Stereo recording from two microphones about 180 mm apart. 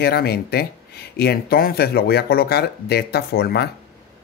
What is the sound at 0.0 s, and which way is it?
Speech, 60° left (ahead or behind).